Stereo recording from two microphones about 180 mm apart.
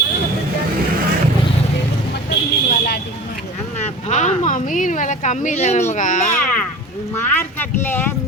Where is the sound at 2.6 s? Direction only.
55° left (ahead or behind).